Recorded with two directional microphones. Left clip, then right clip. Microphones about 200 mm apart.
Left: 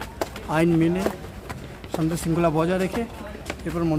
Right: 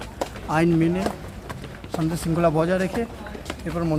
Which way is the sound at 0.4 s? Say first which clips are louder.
Even; centre (ahead or behind).